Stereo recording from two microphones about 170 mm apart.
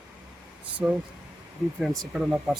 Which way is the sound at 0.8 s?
5° right (ahead or behind).